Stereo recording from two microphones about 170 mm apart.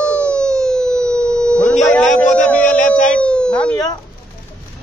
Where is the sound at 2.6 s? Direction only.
45° left (ahead or behind).